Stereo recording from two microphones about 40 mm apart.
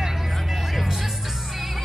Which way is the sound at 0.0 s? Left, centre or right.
Centre.